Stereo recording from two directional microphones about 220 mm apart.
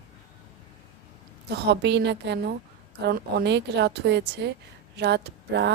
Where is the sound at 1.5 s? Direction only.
50° right (ahead or behind).